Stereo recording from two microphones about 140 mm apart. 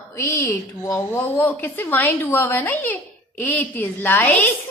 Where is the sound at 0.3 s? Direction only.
15° left (ahead or behind).